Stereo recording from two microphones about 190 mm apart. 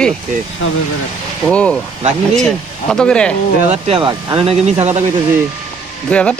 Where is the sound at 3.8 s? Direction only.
30° right (ahead or behind).